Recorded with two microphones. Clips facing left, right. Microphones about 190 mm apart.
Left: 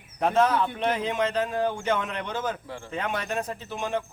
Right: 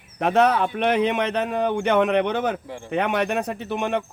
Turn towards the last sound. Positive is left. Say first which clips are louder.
# right 5 dB
turn(degrees=-65)  # may be behind; listen again after turning